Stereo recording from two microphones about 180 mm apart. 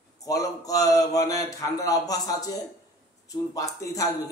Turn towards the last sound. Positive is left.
turn(degrees=20)  # may be behind; listen again after turning